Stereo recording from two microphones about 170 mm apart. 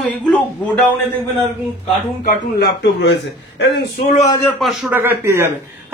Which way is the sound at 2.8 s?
90° left.